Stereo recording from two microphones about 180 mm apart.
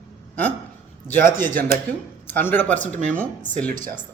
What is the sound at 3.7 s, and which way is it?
Speech, 45° right (ahead or behind).